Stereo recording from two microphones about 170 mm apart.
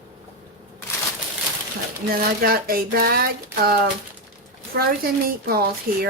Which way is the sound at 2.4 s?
60° right (ahead or behind).